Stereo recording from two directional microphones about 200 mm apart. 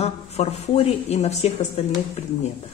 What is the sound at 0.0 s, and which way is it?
Speech, 30° left (ahead or behind).